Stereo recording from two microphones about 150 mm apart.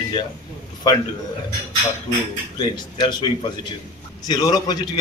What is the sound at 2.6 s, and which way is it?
Speech, 30° left (ahead or behind).